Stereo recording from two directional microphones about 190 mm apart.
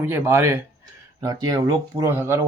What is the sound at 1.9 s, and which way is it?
Speech, 15° right (ahead or behind).